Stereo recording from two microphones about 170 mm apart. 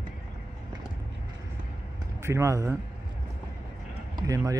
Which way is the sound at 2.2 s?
15° right (ahead or behind).